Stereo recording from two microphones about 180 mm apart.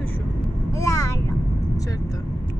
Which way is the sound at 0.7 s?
20° left (ahead or behind).